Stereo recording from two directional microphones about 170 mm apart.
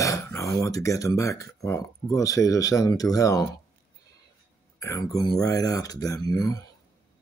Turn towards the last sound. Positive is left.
turn(degrees=20)  # may be behind; listen again after turning